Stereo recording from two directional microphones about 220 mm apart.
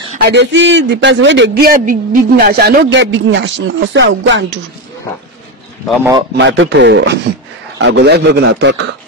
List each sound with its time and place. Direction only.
0.2 s a man's voice: 55° right (ahead or behind)
6.3 s a man's voice: 55° right (ahead or behind)